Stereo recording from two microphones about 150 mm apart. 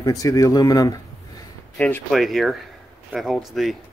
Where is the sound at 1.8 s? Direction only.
10° left (ahead or behind).